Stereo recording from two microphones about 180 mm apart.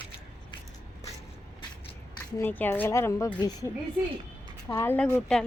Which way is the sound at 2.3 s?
10° left (ahead or behind).